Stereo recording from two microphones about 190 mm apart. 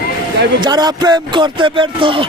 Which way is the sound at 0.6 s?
20° right (ahead or behind).